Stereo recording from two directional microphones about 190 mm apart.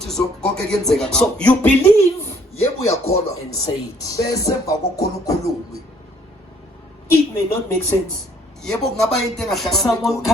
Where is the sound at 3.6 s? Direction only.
20° left (ahead or behind).